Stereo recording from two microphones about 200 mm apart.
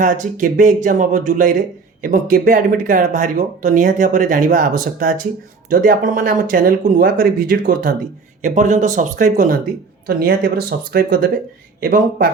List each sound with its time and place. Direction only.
0.0 s speech: 40° right (ahead or behind)